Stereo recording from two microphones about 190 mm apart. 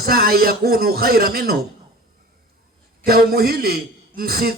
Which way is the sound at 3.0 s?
55° right (ahead or behind).